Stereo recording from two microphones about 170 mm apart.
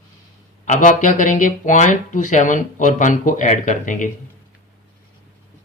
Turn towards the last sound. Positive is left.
turn(degrees=50)  # may be behind; listen again after turning